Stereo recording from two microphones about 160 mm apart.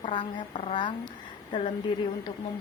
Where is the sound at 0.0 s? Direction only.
30° left (ahead or behind).